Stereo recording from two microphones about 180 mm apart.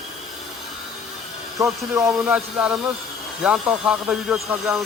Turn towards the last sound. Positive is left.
turn(degrees=-5)  # may be behind; listen again after turning